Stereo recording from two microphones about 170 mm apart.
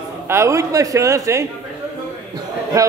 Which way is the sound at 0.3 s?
15° right (ahead or behind).